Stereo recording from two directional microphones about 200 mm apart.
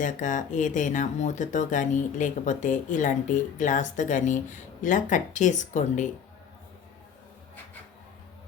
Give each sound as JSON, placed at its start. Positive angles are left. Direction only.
{"t": 0.0, "sound": "speech", "side_deg": 40}